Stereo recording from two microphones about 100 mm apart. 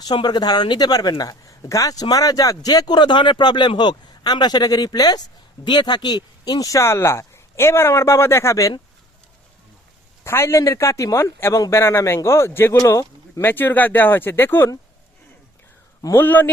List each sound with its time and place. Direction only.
0.0 s speech: 45° left (ahead or behind); by 8.7 s 30° left (ahead or behind)
10.2 s speech: 25° left (ahead or behind)
13.4 s speech: 20° left (ahead or behind)
16.1 s speech: 20° left (ahead or behind)